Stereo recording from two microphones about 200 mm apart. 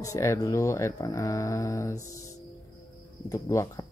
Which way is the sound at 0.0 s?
15° left (ahead or behind).